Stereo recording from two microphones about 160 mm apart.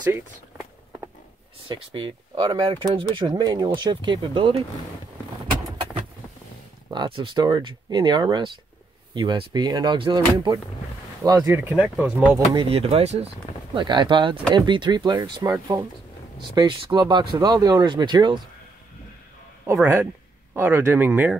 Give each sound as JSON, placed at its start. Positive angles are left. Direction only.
{"t": 1.7, "sound": "speech", "side_deg": -30}
{"t": 6.9, "sound": "speech", "side_deg": -30}
{"t": 12.5, "sound": "speech", "side_deg": -40}
{"t": 13.7, "sound": "speech", "side_deg": -30}
{"t": 19.6, "sound": "speech", "side_deg": -15}